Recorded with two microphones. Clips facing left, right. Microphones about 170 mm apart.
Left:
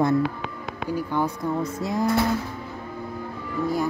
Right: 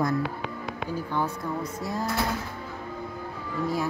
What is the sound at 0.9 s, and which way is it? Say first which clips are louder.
Speech: left 5 dB; 15° left (ahead or behind).